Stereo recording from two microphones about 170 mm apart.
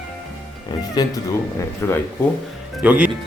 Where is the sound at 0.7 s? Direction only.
25° left (ahead or behind).